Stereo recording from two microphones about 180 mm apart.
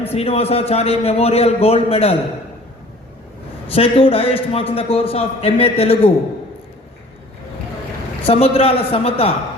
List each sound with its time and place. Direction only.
0.0 s a man's voice: 35° left (ahead or behind)
3.8 s a man's voice: 30° left (ahead or behind)
8.3 s a man's voice: 35° left (ahead or behind)